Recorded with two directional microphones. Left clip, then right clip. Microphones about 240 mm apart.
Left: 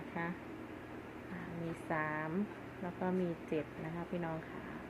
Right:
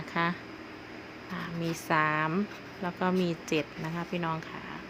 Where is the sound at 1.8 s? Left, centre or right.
Right.